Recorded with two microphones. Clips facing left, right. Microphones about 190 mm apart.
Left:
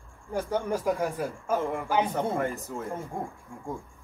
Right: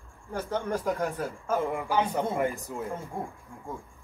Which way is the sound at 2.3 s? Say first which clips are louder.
Right 1 dB; 15° right (ahead or behind).